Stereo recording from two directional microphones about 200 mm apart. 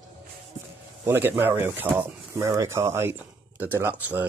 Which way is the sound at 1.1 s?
10° right (ahead or behind).